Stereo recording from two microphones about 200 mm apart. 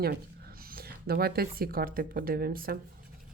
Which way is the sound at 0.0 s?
50° right (ahead or behind).